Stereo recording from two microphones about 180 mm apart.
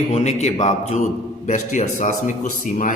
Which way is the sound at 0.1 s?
40° left (ahead or behind).